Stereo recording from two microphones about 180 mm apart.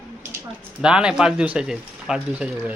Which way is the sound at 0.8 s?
5° right (ahead or behind).